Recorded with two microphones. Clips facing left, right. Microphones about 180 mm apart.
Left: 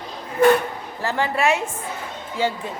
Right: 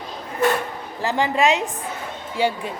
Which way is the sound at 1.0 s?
15° right (ahead or behind).